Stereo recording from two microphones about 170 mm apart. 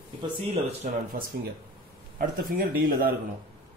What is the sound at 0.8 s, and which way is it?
Speech, 50° right (ahead or behind).